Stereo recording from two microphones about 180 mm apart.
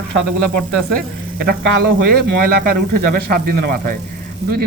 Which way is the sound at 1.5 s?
65° right (ahead or behind).